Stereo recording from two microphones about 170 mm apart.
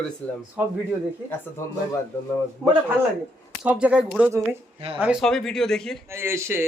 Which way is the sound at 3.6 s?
5° right (ahead or behind).